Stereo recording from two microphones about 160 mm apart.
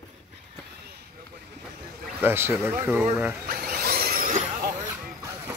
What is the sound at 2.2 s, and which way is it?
Speech, 15° right (ahead or behind).